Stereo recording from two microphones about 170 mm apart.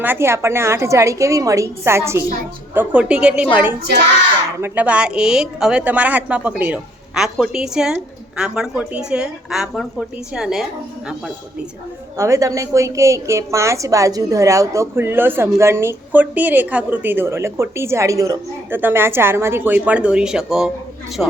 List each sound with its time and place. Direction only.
0.0 s a woman's voice: 15° right (ahead or behind)
12.1 s a woman's voice: 15° right (ahead or behind); by 21.3 s 5° left (ahead or behind)